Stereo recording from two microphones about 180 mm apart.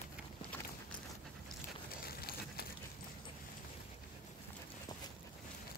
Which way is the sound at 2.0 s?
55° left (ahead or behind).